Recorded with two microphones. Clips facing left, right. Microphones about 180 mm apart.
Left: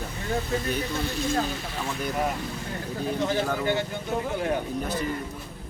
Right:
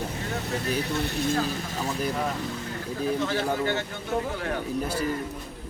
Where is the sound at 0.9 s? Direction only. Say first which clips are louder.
Right 1 dB; 65° right (ahead or behind).